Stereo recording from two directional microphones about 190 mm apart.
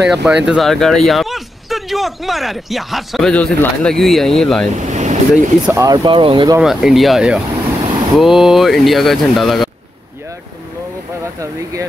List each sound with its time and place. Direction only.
0.0 s speech: centre (ahead or behind)
4.7 s vehicle: 40° right (ahead or behind)
5.3 s speech: 15° right (ahead or behind)
6.6 s speech: centre (ahead or behind)